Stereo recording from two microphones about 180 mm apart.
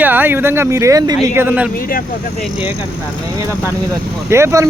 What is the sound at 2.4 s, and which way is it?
Speech, 5° right (ahead or behind).